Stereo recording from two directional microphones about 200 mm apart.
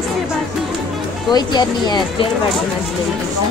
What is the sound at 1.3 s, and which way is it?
Speech, 20° left (ahead or behind).